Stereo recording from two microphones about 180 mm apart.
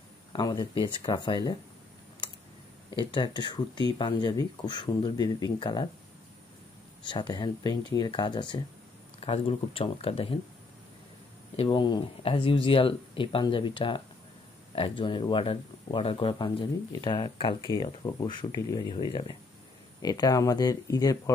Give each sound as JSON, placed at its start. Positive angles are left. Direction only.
{"t": 0.3, "sound": "speech", "side_deg": 25}
{"t": 3.0, "sound": "speech", "side_deg": 25}
{"t": 7.1, "sound": "speech", "side_deg": 25}
{"t": 11.5, "sound": "speech", "side_deg": 30}